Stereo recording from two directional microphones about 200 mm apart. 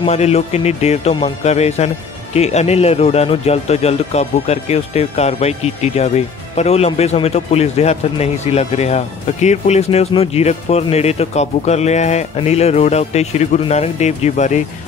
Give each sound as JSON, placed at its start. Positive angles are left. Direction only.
{"t": 0.0, "sound": "a man's voice", "side_deg": 30}